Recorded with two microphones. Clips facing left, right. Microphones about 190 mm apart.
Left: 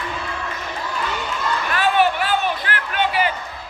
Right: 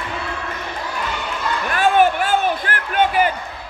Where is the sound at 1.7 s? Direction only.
50° right (ahead or behind).